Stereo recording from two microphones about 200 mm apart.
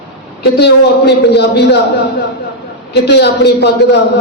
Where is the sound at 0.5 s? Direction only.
55° left (ahead or behind).